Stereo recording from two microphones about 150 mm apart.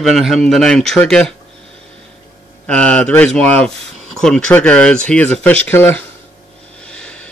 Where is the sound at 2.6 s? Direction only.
10° left (ahead or behind).